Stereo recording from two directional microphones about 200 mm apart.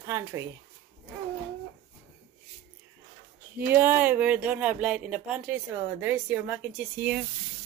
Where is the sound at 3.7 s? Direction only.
10° right (ahead or behind).